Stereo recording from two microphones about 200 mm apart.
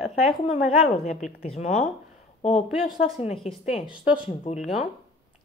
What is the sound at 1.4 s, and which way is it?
Speech, 35° left (ahead or behind).